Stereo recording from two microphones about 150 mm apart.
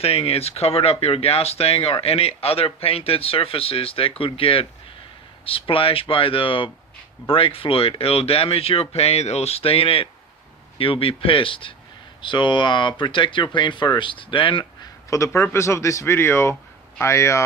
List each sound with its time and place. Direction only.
0.0 s speech: 40° left (ahead or behind)
15.1 s speech: 20° left (ahead or behind)